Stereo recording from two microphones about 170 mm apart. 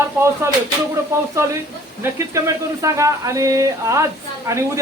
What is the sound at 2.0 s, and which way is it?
A man's voice, 10° right (ahead or behind).